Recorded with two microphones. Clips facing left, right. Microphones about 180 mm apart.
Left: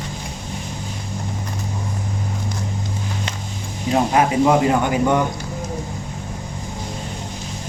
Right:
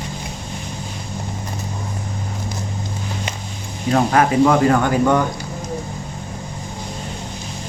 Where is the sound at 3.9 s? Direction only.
20° left (ahead or behind).